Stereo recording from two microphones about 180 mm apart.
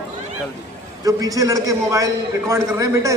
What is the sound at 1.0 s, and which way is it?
A man's voice, 20° right (ahead or behind).